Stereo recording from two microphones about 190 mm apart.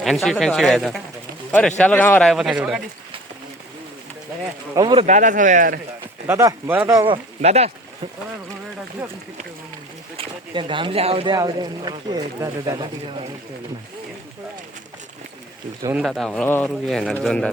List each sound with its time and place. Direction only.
0.0 s speech: centre (ahead or behind)
4.7 s speech: 25° right (ahead or behind)
5.0 s speech: 40° right (ahead or behind)
6.2 s speech: 15° right (ahead or behind)
7.1 s speech: 35° right (ahead or behind)
10.2 s speech: 25° right (ahead or behind)
16.0 s speech: centre (ahead or behind)